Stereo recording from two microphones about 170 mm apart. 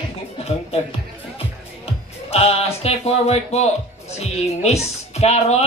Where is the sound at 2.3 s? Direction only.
35° left (ahead or behind).